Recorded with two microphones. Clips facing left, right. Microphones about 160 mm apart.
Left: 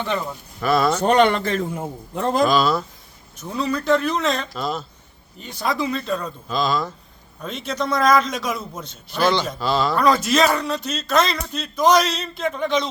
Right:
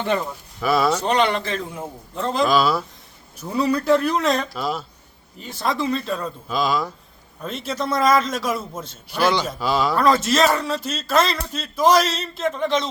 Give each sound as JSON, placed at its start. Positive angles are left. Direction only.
{"t": 0.6, "sound": "a man's voice", "side_deg": -5}
{"t": 0.9, "sound": "a man's voice", "side_deg": 50}
{"t": 2.5, "sound": "a man's voice", "side_deg": -5}